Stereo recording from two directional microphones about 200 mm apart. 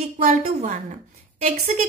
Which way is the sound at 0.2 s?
35° right (ahead or behind).